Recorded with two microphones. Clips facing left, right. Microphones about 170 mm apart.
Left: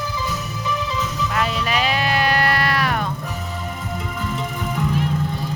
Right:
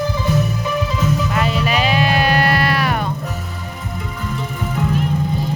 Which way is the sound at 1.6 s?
5° right (ahead or behind).